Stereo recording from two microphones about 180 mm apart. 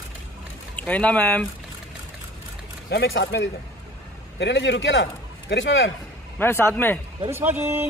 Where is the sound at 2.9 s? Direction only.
80° left.